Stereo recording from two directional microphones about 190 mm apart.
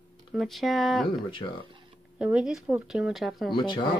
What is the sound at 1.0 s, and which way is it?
Speech, 25° left (ahead or behind).